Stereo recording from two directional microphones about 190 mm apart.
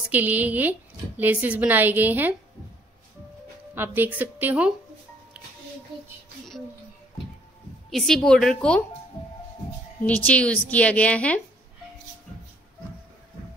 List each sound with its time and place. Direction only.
0.1 s a woman's voice: 10° right (ahead or behind)
3.7 s a woman's voice: 10° right (ahead or behind)
7.9 s a woman's voice: centre (ahead or behind)
10.0 s a woman's voice: 5° left (ahead or behind)